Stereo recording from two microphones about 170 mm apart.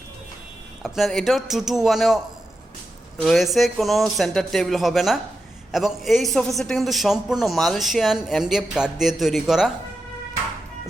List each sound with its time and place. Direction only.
0.8 s a man's voice: centre (ahead or behind)
3.2 s a man's voice: centre (ahead or behind)